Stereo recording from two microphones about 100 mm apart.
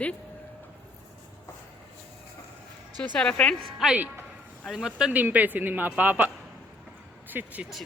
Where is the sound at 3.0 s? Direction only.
10° left (ahead or behind).